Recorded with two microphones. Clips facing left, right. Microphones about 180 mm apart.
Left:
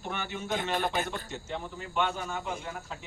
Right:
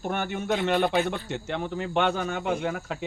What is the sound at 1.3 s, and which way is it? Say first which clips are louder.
Speech: right 7 dB; 70° right (ahead or behind).